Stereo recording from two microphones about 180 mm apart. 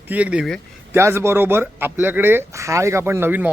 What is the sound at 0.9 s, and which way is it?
A man's voice, 15° right (ahead or behind).